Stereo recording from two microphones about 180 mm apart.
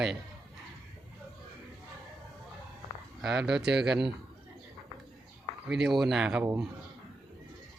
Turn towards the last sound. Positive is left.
turn(degrees=-5)  # may be behind; listen again after turning